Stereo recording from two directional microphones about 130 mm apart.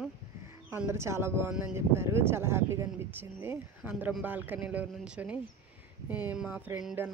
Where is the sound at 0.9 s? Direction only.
20° right (ahead or behind).